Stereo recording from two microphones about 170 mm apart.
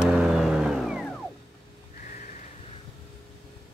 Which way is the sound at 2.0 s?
50° left (ahead or behind).